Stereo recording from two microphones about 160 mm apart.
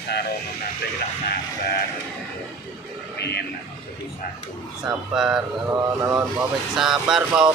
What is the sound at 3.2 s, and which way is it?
Speech, 90° left.